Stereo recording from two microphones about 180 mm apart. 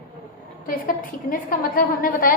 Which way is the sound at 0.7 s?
50° left (ahead or behind).